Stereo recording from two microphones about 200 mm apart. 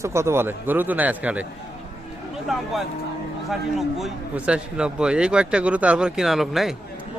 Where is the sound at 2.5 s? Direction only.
Centre (ahead or behind).